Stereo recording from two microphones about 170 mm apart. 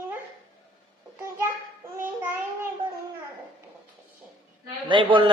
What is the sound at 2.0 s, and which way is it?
Child singing, 15° right (ahead or behind).